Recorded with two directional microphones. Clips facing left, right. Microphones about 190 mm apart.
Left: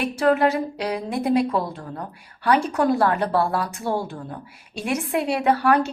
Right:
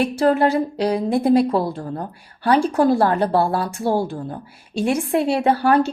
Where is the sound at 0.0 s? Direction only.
30° right (ahead or behind).